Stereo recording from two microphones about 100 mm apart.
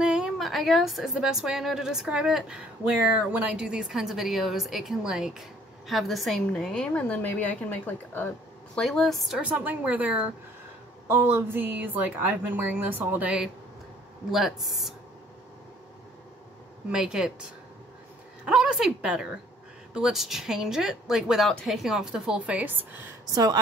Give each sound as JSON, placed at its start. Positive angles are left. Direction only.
{"t": 0.0, "sound": "a sound", "side_deg": -5}
{"t": 1.1, "sound": "a woman's voice", "side_deg": -5}
{"t": 8.7, "sound": "a woman's voice", "side_deg": 5}
{"t": 9.5, "sound": "a woman's voice", "side_deg": -15}
{"t": 11.1, "sound": "a woman's voice", "side_deg": -25}
{"t": 14.3, "sound": "a woman's voice", "side_deg": 0}
{"t": 16.9, "sound": "a woman's voice", "side_deg": -5}
{"t": 23.3, "sound": "a woman's voice", "side_deg": -40}